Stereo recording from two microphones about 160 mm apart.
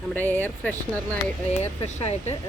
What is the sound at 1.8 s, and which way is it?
Speech, 40° left (ahead or behind).